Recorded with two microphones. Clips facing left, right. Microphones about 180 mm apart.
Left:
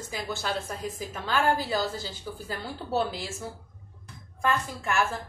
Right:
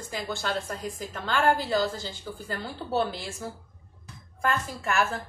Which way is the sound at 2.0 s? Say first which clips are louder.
Even; 5° left (ahead or behind).